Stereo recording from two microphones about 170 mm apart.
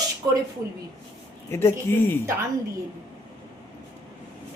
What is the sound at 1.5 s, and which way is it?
Speech, 15° left (ahead or behind).